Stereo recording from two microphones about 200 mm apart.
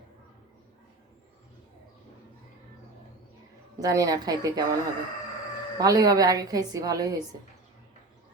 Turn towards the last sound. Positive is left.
turn(degrees=-15)  # may be behind; listen again after turning